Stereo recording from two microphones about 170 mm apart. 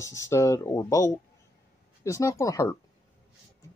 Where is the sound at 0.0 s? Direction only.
15° left (ahead or behind).